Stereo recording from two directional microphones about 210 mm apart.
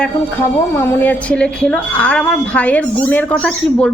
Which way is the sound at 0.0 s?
10° left (ahead or behind).